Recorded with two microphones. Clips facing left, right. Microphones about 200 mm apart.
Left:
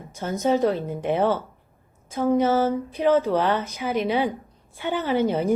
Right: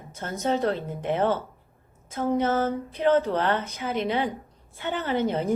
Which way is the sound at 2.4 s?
15° left (ahead or behind).